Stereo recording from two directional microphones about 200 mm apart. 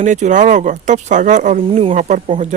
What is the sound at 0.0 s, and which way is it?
Speech, 35° right (ahead or behind).